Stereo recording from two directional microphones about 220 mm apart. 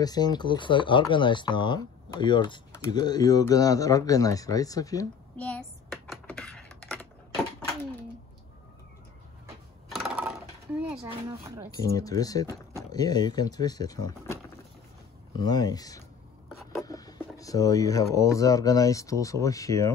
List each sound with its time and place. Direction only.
0.0 s speech: 20° left (ahead or behind)
5.5 s dishes: 5° left (ahead or behind)
9.8 s a sound: centre (ahead or behind)
11.1 s speech: 15° right (ahead or behind)
11.7 s speech: 15° left (ahead or behind)
16.8 s a sound: 15° left (ahead or behind)
18.1 s speech: 15° left (ahead or behind)